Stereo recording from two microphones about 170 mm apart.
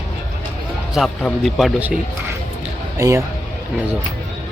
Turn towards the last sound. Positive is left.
turn(degrees=-20)  # may be behind; listen again after turning